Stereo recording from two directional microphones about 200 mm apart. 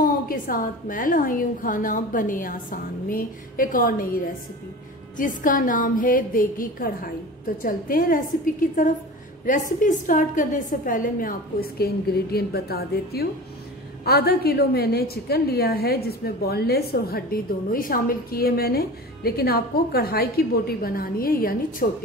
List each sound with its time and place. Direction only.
0.0 s a woman's voice: 45° left (ahead or behind)
5.1 s a woman's voice: 40° left (ahead or behind)
9.5 s a woman's voice: 40° left (ahead or behind)